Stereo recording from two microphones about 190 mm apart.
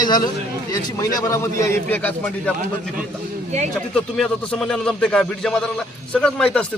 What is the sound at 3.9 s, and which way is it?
Speech, 5° left (ahead or behind).